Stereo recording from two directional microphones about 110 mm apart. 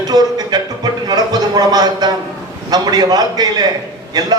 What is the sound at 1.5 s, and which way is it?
A man's voice, 35° right (ahead or behind).